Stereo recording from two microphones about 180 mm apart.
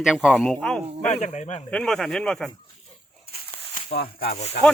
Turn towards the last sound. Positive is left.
turn(degrees=40)  # may be behind; listen again after turning